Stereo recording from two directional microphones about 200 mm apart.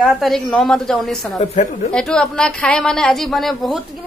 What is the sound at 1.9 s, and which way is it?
A woman's voice, 5° left (ahead or behind).